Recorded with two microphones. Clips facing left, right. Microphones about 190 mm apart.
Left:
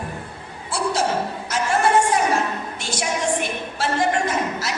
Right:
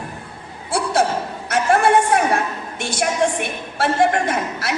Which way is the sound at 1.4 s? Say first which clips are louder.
Right 5 dB; 60° right (ahead or behind).